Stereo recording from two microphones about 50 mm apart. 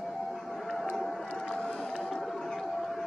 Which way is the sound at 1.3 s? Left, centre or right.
Centre.